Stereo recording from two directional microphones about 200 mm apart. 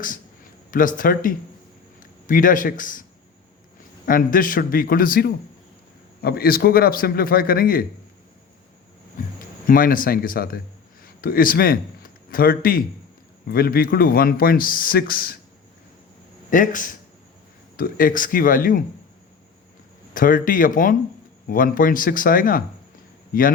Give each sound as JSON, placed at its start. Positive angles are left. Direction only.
{"t": 0.7, "sound": "a man's voice", "side_deg": 40}
{"t": 9.6, "sound": "a man's voice", "side_deg": 45}
{"t": 16.5, "sound": "a man's voice", "side_deg": 40}
{"t": 20.1, "sound": "a man's voice", "side_deg": 45}